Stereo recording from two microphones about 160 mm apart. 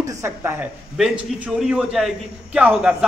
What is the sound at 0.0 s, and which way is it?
A man's voice, 20° right (ahead or behind).